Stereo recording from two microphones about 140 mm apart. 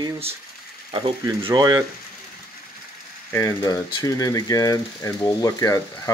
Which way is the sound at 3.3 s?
25° left (ahead or behind).